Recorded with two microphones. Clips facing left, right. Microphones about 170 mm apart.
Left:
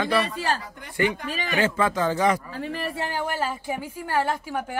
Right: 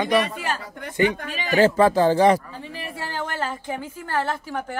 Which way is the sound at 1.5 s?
35° right (ahead or behind).